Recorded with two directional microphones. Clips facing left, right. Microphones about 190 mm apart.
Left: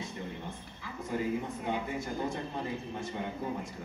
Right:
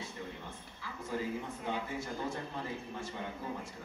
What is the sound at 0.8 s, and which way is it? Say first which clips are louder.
A man's voice: left 4 dB; 15° left (ahead or behind).